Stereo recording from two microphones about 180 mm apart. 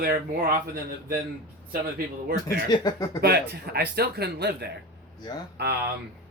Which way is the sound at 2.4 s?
20° left (ahead or behind).